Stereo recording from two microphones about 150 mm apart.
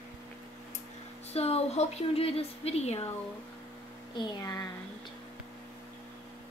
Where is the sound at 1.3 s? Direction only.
45° left (ahead or behind).